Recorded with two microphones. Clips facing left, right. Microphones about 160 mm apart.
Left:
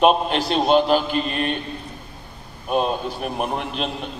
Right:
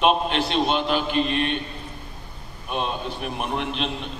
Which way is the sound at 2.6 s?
40° left (ahead or behind).